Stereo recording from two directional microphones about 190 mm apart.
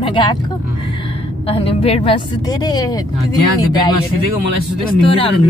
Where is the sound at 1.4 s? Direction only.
30° left (ahead or behind).